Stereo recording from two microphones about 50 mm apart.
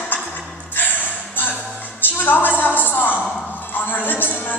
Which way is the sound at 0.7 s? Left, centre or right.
Left.